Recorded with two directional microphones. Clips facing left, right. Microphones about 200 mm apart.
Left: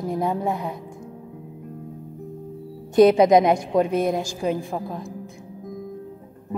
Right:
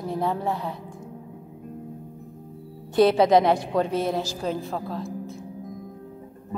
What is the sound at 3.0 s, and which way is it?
A woman's voice, 15° left (ahead or behind).